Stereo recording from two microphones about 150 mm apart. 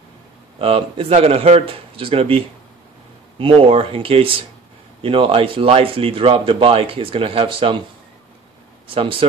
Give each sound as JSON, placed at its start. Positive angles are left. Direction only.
{"t": 0.6, "sound": "speech", "side_deg": -40}
{"t": 8.8, "sound": "speech", "side_deg": -35}